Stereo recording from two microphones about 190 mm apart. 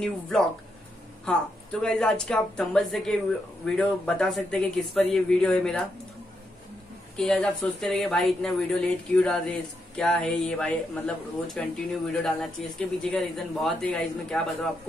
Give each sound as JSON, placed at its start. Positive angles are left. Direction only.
{"t": 1.2, "sound": "a woman's voice", "side_deg": 5}
{"t": 7.2, "sound": "a woman's voice", "side_deg": 0}